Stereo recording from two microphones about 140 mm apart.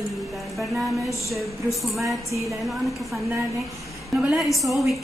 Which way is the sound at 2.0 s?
20° right (ahead or behind).